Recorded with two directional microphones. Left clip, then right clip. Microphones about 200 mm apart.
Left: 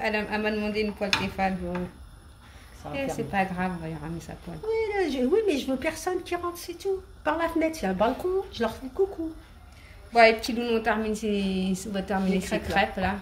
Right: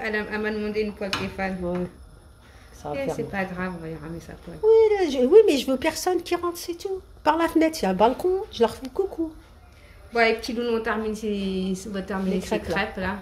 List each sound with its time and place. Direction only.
0.0 s a woman's voice: 20° left (ahead or behind)
2.9 s a woman's voice: 20° left (ahead or behind)
4.6 s a woman's voice: 45° right (ahead or behind)
10.1 s a woman's voice: 20° left (ahead or behind)